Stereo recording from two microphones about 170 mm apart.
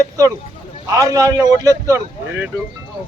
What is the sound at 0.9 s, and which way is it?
A man's voice, 20° right (ahead or behind).